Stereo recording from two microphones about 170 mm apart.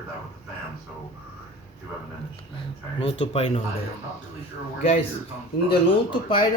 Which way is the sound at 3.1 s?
35° left (ahead or behind).